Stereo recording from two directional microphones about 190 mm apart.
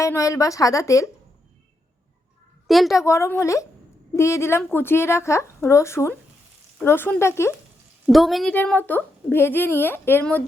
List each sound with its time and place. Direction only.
0.0 s a woman's voice: 15° left (ahead or behind)
2.6 s a woman's voice: centre (ahead or behind)
3.0 s a woman's voice: 15° left (ahead or behind)
8.0 s a woman's voice: centre (ahead or behind)